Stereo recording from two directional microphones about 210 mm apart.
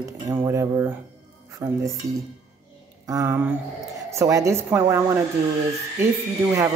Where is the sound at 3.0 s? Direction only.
15° right (ahead or behind).